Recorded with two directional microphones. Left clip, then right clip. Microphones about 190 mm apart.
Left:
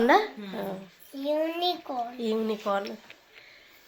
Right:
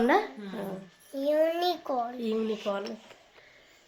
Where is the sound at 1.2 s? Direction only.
25° right (ahead or behind).